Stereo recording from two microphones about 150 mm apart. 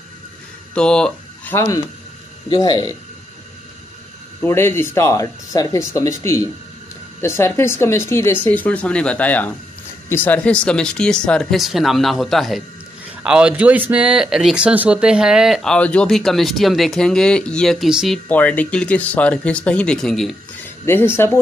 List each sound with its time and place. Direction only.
0.7 s speech: 5° left (ahead or behind)
2.5 s speech: 30° left (ahead or behind)
4.5 s speech: 15° left (ahead or behind); by 18.2 s centre (ahead or behind)
18.3 s speech: 10° left (ahead or behind)
20.8 s speech: 15° left (ahead or behind)